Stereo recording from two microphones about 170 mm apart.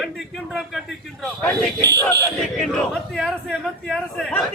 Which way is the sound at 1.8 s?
75° right (ahead or behind).